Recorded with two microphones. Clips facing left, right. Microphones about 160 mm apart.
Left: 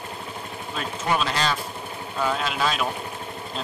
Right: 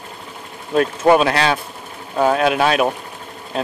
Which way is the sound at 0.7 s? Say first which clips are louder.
Right 13 dB; 60° right (ahead or behind).